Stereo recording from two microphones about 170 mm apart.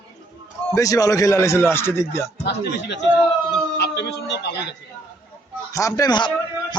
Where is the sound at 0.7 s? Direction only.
20° left (ahead or behind).